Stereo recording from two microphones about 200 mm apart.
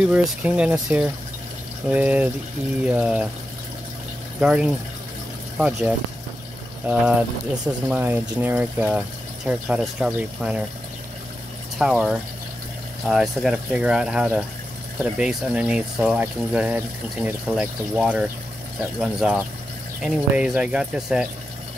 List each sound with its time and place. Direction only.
0.1 s speech: 5° right (ahead or behind)
4.4 s speech: 5° right (ahead or behind)
7.6 s speech: 10° right (ahead or behind)
11.8 s speech: 5° right (ahead or behind)